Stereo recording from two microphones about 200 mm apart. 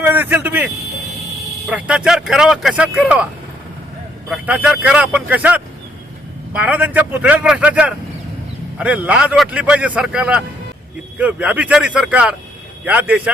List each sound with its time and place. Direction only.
0.0 s speech: 10° right (ahead or behind)
4.3 s a man's voice: 5° right (ahead or behind)